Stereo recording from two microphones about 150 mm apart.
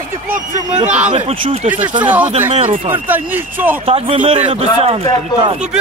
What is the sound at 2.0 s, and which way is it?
Speech, 10° right (ahead or behind).